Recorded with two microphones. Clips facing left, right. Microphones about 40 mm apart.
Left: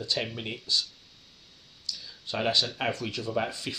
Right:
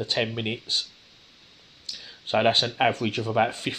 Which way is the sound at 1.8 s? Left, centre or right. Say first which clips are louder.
Right 5 dB; right.